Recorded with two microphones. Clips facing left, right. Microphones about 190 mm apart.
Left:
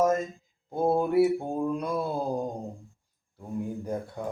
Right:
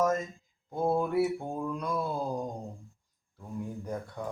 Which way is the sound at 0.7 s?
25° left (ahead or behind).